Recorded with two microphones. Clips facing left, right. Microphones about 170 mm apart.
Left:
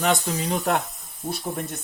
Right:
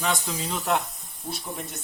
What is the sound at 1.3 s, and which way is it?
Speech, 55° left (ahead or behind).